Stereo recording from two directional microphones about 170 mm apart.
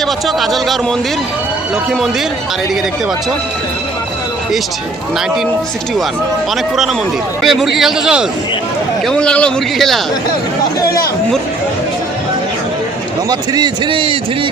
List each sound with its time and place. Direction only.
0.3 s a man's voice: centre (ahead or behind)
7.4 s a man's voice: centre (ahead or behind)
13.5 s a man's voice: 25° right (ahead or behind)